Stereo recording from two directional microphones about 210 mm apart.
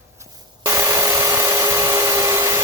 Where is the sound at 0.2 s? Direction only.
15° right (ahead or behind).